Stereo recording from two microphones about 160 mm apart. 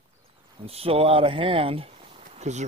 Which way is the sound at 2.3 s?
45° right (ahead or behind).